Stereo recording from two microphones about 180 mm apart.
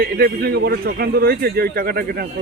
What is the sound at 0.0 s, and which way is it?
A man's voice, 60° right (ahead or behind).